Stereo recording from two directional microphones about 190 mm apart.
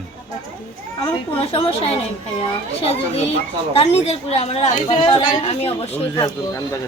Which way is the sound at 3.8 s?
35° left (ahead or behind).